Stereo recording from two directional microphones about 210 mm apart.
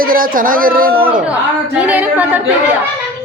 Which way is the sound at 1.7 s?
5° right (ahead or behind).